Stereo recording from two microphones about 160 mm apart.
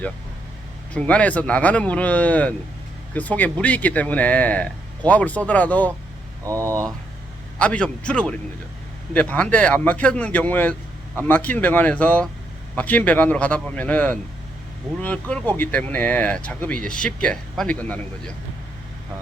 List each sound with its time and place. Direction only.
0.9 s speech: 10° left (ahead or behind)
6.4 s speech: 20° right (ahead or behind)
7.6 s speech: 5° left (ahead or behind)